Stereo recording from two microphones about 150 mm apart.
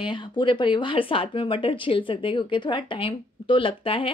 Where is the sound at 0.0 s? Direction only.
35° left (ahead or behind).